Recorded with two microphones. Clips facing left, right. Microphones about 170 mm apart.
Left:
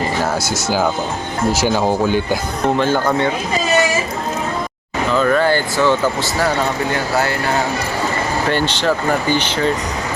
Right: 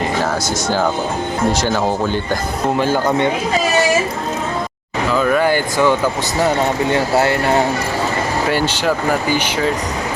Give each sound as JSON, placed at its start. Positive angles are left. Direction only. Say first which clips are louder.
{"t": 1.6, "sound": "speech", "louder": "left 2 dB", "side_deg": 10}
{"t": 2.7, "sound": "speech", "louder": "right 1 dB", "side_deg": -10}
{"t": 5.1, "sound": "speech", "louder": "even", "side_deg": -10}
{"t": 6.9, "sound": "speech", "louder": "right 3 dB", "side_deg": -25}
{"t": 8.4, "sound": "speech", "louder": "left 1 dB", "side_deg": -10}